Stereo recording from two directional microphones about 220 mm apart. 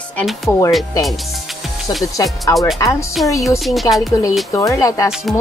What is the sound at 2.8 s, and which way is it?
Speech, 15° left (ahead or behind).